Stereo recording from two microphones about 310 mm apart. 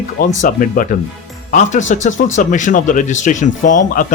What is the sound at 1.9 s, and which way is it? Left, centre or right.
Speech, left.